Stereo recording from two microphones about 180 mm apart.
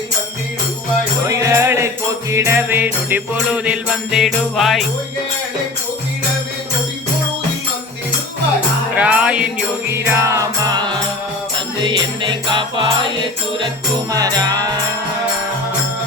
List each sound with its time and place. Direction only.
1.3 s music: 15° right (ahead or behind)
9.0 s music: 5° right (ahead or behind); by 12.9 s 25° right (ahead or behind)
14.1 s music: 20° right (ahead or behind)